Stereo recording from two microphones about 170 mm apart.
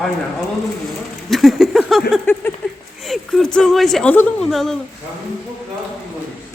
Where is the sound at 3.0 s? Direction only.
5° left (ahead or behind).